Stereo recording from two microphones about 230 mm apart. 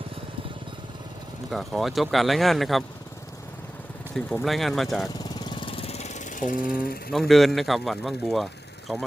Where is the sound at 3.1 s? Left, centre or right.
Centre.